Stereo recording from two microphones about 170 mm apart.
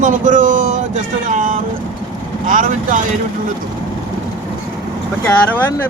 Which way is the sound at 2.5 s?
50° right (ahead or behind).